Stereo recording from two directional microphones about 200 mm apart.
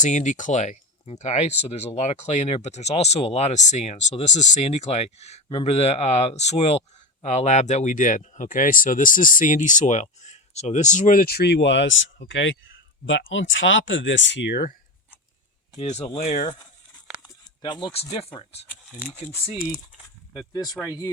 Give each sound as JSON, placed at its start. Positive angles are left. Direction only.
{"t": 0.0, "sound": "speech", "side_deg": 40}
{"t": 15.8, "sound": "speech", "side_deg": 30}
{"t": 17.2, "sound": "speech", "side_deg": 20}
{"t": 18.7, "sound": "speech", "side_deg": 5}
{"t": 20.5, "sound": "speech", "side_deg": 20}